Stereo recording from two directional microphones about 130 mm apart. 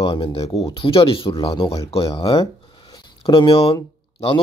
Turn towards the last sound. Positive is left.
turn(degrees=45)  # may be behind; listen again after turning